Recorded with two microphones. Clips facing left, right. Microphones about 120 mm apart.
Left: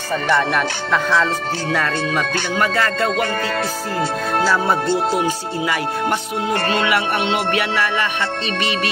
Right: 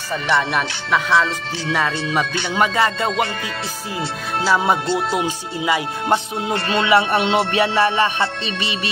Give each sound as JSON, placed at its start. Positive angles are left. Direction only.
{"t": 0.5, "sound": "speech", "side_deg": -15}
{"t": 2.5, "sound": "music", "side_deg": -20}
{"t": 6.8, "sound": "music", "side_deg": -30}